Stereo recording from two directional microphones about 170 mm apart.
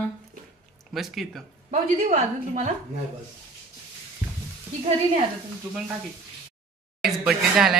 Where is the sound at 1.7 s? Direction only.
45° right (ahead or behind).